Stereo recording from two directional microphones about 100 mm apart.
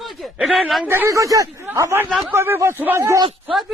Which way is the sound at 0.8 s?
20° right (ahead or behind).